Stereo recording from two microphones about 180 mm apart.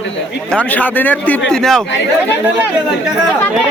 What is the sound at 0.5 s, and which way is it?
A man's voice, 10° left (ahead or behind).